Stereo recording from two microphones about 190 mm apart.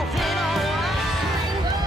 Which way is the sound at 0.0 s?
Centre (ahead or behind).